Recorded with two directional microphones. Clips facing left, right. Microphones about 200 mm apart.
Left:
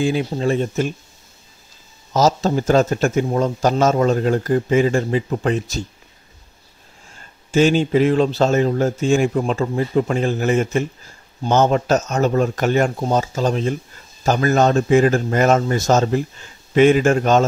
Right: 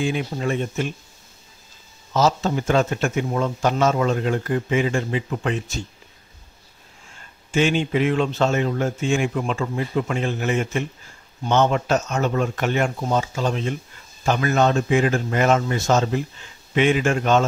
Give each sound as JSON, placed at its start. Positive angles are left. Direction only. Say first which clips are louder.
{"t": 0.0, "sound": "speech", "louder": "left 5 dB", "side_deg": 35}
{"t": 2.1, "sound": "speech", "louder": "left 3 dB", "side_deg": 40}
{"t": 7.5, "sound": "speech", "louder": "left 5 dB", "side_deg": 35}